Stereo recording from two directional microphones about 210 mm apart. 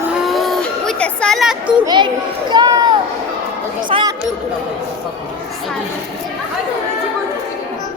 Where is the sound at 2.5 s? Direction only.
20° right (ahead or behind).